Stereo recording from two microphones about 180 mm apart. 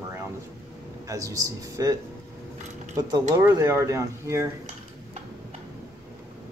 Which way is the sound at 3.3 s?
15° right (ahead or behind).